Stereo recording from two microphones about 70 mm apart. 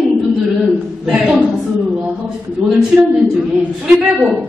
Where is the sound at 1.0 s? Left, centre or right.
Centre.